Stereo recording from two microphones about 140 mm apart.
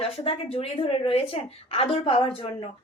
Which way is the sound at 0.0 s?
45° left (ahead or behind).